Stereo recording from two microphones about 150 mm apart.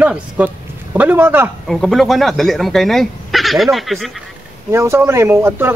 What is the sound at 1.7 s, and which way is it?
Speech, centre (ahead or behind).